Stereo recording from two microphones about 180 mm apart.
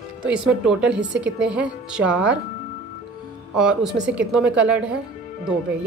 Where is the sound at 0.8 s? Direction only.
75° right (ahead or behind).